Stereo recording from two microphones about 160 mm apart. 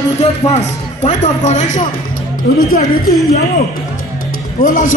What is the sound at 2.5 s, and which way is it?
Speech, 75° left (ahead or behind).